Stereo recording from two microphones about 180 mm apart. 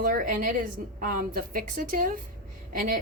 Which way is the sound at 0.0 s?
50° right (ahead or behind).